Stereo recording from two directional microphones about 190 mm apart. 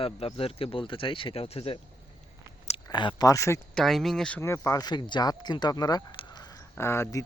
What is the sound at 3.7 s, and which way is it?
Speech, centre (ahead or behind).